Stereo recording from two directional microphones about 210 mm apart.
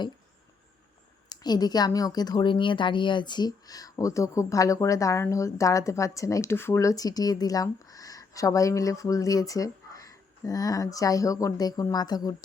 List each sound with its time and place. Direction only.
1.3 s speech: 20° left (ahead or behind)